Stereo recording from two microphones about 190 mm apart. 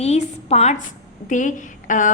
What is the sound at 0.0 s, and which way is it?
A woman's voice, 35° left (ahead or behind).